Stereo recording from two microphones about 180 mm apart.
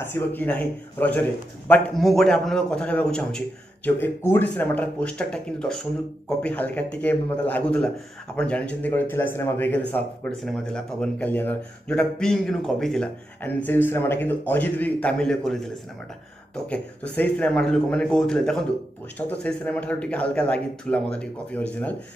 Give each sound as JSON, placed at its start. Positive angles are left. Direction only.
{"t": 0.0, "sound": "a man's voice", "side_deg": 10}